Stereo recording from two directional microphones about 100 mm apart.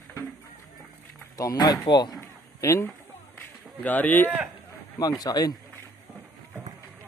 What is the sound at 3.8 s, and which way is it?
Speech, 15° left (ahead or behind).